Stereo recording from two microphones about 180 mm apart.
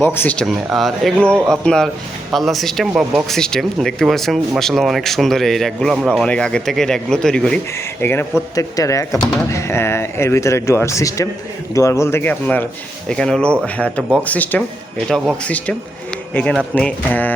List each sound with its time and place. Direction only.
0.0 s speech: 10° left (ahead or behind)
8.5 s speech: 20° left (ahead or behind)